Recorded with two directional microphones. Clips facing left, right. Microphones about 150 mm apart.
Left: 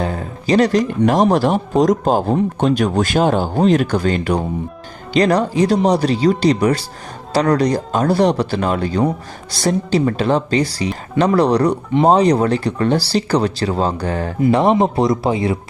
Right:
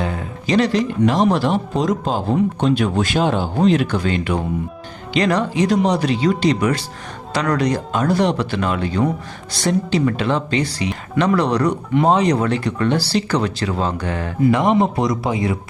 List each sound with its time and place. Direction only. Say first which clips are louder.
0.0 s speech: left 2 dB; 35° left (ahead or behind)